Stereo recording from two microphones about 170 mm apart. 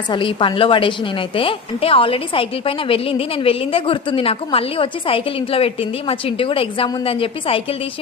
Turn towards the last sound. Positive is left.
turn(degrees=30)  # may be behind; listen again after turning